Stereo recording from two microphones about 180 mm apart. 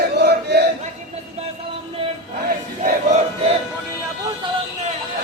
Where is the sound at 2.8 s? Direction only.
35° right (ahead or behind).